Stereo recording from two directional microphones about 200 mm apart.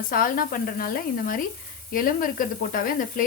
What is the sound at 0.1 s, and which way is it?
Speech, 45° left (ahead or behind).